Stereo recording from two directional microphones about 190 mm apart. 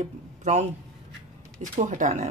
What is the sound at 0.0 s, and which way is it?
Speech, 40° right (ahead or behind).